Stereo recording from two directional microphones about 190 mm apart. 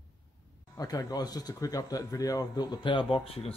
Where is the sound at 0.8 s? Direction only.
20° left (ahead or behind).